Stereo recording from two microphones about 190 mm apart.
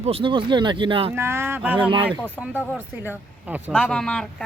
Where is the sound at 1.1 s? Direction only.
15° right (ahead or behind).